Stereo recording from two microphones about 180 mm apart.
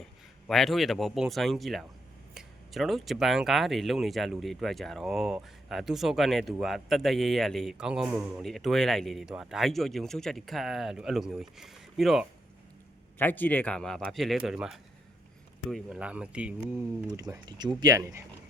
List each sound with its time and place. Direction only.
0.4 s speech: centre (ahead or behind)
13.1 s speech: 10° left (ahead or behind); by 16.6 s 5° right (ahead or behind)
17.1 s speech: 20° right (ahead or behind)